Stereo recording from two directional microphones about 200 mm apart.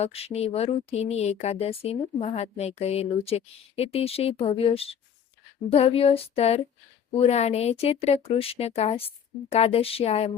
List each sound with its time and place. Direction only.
0.0 s speech: 30° left (ahead or behind)
5.7 s female singing: 30° left (ahead or behind)
7.1 s speech: 30° left (ahead or behind)